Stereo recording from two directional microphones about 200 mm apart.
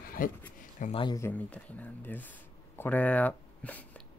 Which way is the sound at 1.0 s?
15° left (ahead or behind).